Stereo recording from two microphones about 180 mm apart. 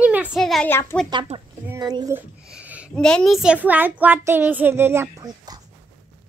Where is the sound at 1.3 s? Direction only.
35° right (ahead or behind).